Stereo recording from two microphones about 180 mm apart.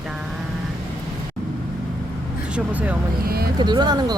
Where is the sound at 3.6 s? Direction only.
25° right (ahead or behind).